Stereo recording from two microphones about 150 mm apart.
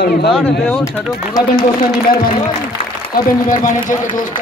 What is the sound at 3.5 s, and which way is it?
Speech, 60° left (ahead or behind).